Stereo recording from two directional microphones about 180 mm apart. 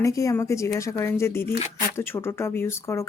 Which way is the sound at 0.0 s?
15° left (ahead or behind).